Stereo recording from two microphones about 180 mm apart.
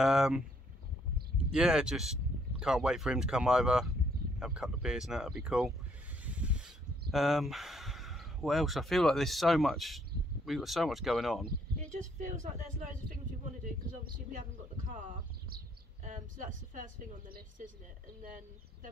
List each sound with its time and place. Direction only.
0.0 s speech: centre (ahead or behind)
1.5 s speech: 5° right (ahead or behind)
11.8 s speech: 40° right (ahead or behind)
14.9 s a sound: 45° right (ahead or behind)
18.2 s speech: 50° right (ahead or behind)